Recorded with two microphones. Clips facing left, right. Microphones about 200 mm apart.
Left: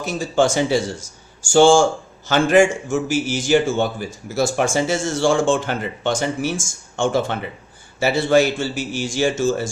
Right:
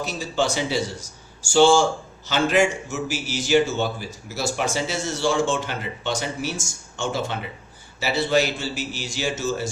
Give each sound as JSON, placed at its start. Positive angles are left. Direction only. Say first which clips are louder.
{"t": 0.0, "sound": "speech", "louder": "left 6 dB", "side_deg": 50}